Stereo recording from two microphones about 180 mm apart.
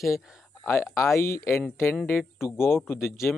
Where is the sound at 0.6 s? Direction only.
15° left (ahead or behind).